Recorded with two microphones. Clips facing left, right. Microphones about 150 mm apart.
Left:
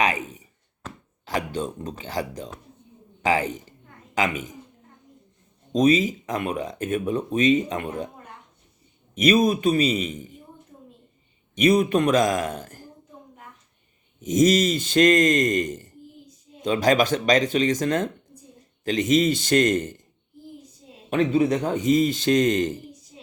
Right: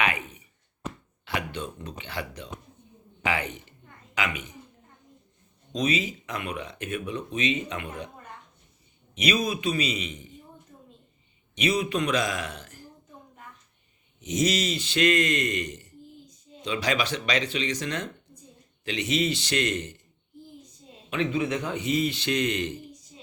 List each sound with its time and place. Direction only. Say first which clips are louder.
0.0 s speech: left 4 dB; 40° left (ahead or behind)
5.7 s a man's voice: left 8 dB; 45° left (ahead or behind)
9.1 s a man's voice: left 8 dB; 45° left (ahead or behind)
11.5 s a man's voice: left 7 dB; 50° left (ahead or behind)
14.2 s a man's voice: left 7 dB; 45° left (ahead or behind)
21.1 s a man's voice: left 7 dB; 40° left (ahead or behind)